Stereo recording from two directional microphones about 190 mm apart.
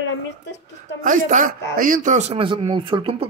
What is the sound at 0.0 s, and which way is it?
Speech, 75° left (ahead or behind).